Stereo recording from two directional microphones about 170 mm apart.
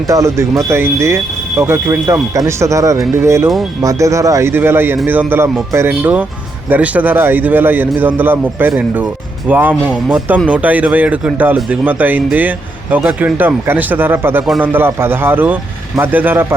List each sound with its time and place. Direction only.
0.1 s speech: 20° right (ahead or behind)
14.4 s a man's voice: centre (ahead or behind)
14.7 s speech: 15° right (ahead or behind)